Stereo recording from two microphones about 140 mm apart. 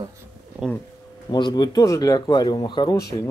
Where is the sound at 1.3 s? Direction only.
30° left (ahead or behind).